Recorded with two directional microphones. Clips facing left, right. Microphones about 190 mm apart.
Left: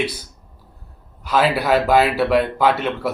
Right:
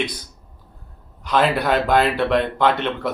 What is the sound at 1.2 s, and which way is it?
A man's voice, 5° left (ahead or behind).